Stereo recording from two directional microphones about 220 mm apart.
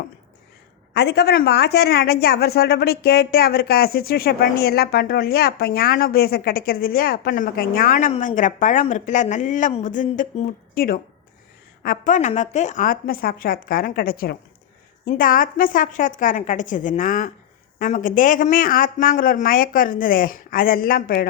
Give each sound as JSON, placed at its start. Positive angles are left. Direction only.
{"t": 0.9, "sound": "speech", "side_deg": 50}